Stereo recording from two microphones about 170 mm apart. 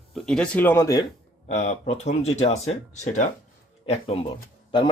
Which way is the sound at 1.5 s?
45° left (ahead or behind).